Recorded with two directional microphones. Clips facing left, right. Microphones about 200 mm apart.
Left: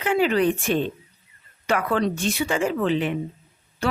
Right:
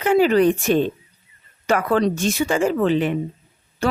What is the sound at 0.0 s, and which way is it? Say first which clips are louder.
A woman's voice: right 5 dB; 40° right (ahead or behind).